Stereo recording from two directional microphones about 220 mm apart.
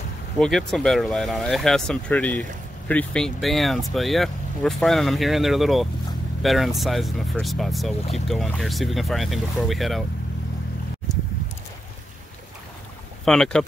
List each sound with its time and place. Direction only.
0.4 s speech: centre (ahead or behind)
13.2 s speech: 5° left (ahead or behind)